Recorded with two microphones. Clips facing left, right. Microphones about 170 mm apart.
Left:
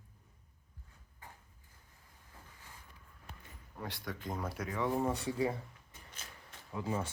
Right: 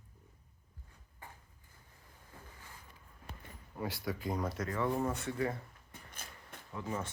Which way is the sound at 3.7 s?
5° right (ahead or behind).